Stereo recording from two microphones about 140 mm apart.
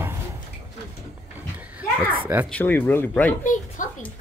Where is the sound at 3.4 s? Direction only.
65° left (ahead or behind).